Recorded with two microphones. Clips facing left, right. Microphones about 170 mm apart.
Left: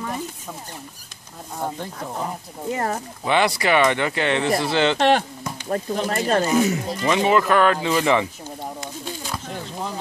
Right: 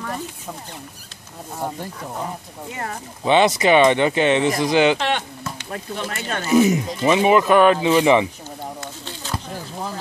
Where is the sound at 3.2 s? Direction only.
20° right (ahead or behind).